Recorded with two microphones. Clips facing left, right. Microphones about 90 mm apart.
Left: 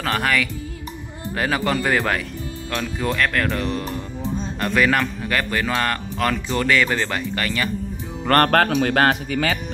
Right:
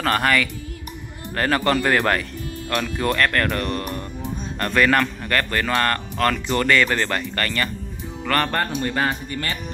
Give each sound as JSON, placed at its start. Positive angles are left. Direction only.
{"t": 0.0, "sound": "a man's voice", "side_deg": 0}
{"t": 8.5, "sound": "speech", "side_deg": 85}